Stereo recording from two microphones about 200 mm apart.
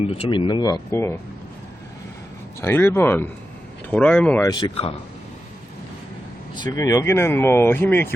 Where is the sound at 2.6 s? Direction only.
10° left (ahead or behind).